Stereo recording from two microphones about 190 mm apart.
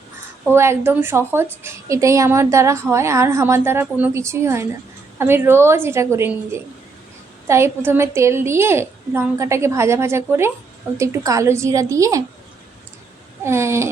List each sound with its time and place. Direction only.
0.5 s a woman's voice: 15° right (ahead or behind)
13.4 s a woman's voice: 15° right (ahead or behind)